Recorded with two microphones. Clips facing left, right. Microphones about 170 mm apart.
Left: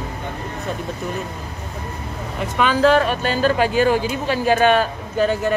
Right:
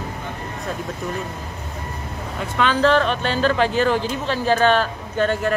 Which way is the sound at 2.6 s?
10° left (ahead or behind).